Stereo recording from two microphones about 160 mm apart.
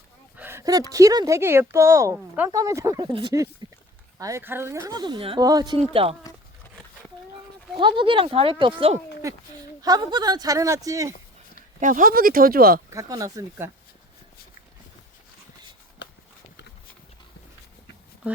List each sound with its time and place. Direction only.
0.3 s speech: 15° right (ahead or behind)
2.5 s speech: 20° right (ahead or behind)
3.6 s a sound: 30° right (ahead or behind)
4.2 s speech: 20° right (ahead or behind)
5.9 s speech: 35° right (ahead or behind)
7.8 s speech: 30° right (ahead or behind)
11.8 s speech: 55° right (ahead or behind)
12.9 s speech: 20° right (ahead or behind)